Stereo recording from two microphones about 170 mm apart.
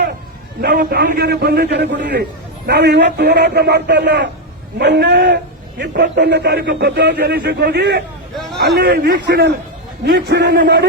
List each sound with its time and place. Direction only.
0.8 s a man's voice: 60° right (ahead or behind); by 9.5 s 85° right
10.0 s a man's voice: 70° right (ahead or behind)